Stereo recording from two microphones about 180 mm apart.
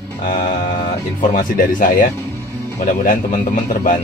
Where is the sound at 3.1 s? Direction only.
45° left (ahead or behind).